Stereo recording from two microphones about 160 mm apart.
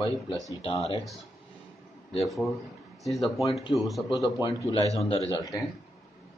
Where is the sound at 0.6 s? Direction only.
40° left (ahead or behind).